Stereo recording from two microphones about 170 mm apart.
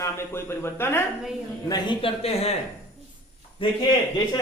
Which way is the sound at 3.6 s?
30° left (ahead or behind).